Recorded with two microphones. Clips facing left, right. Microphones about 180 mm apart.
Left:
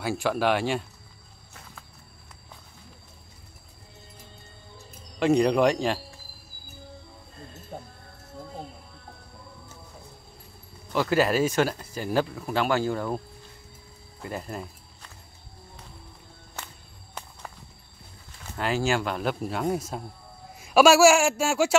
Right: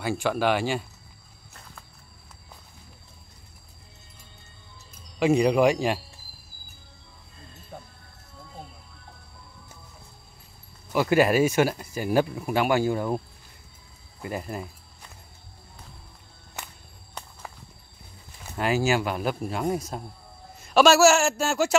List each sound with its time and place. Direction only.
0.0 s speech: centre (ahead or behind)
5.2 s speech: 5° right (ahead or behind)
7.7 s music: 25° left (ahead or behind)
10.9 s speech: 15° right (ahead or behind)
14.2 s a sound: 10° right (ahead or behind)
18.4 s a man's voice: 10° right (ahead or behind); by 21.7 s 10° left (ahead or behind)